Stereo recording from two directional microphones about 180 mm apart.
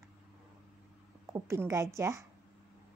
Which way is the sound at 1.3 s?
15° right (ahead or behind).